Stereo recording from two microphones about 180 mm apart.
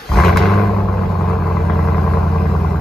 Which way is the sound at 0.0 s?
Centre (ahead or behind).